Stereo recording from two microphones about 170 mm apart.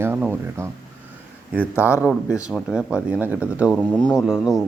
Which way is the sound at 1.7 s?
15° left (ahead or behind).